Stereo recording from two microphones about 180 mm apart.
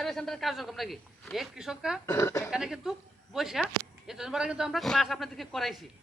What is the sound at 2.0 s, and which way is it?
Speech, 15° left (ahead or behind).